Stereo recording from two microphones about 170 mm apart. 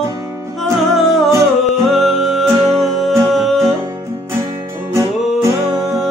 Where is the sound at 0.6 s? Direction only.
Centre (ahead or behind).